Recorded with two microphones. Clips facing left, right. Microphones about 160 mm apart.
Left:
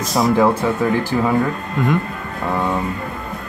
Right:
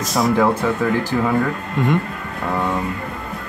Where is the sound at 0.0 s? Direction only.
Centre (ahead or behind).